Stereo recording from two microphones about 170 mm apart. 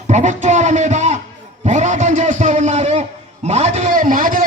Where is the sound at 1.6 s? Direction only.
45° right (ahead or behind).